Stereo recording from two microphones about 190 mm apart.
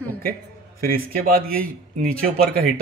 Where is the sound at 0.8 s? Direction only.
50° right (ahead or behind).